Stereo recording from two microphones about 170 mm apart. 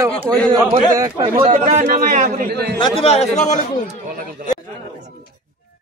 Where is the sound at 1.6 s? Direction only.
50° right (ahead or behind).